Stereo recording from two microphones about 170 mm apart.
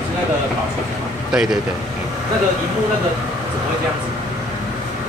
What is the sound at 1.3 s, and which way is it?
Speech, 5° right (ahead or behind).